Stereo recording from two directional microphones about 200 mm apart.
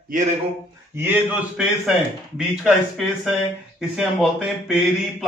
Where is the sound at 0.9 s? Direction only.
10° right (ahead or behind).